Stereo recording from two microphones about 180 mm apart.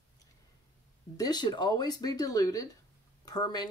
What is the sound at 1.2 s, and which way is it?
Speech, 20° left (ahead or behind).